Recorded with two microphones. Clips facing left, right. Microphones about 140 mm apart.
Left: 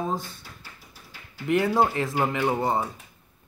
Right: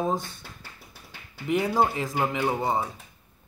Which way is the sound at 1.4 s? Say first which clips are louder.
Left 2 dB; centre (ahead or behind).